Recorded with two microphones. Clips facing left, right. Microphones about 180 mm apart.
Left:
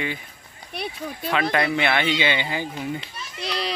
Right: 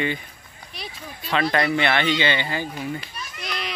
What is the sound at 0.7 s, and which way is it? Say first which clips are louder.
Speech: left 7 dB; 60° left (ahead or behind).